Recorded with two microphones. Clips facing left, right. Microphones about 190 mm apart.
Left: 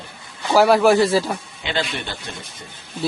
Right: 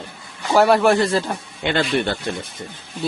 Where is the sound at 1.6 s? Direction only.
55° right (ahead or behind).